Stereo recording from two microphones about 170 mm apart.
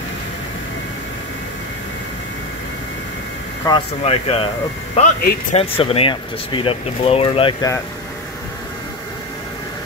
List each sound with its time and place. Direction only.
4.0 s speech: 35° left (ahead or behind)